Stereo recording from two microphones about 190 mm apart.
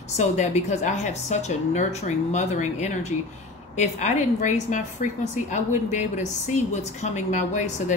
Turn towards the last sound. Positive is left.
turn(degrees=40)  # may be behind; listen again after turning